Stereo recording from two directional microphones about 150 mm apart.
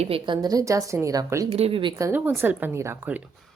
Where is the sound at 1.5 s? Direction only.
40° right (ahead or behind).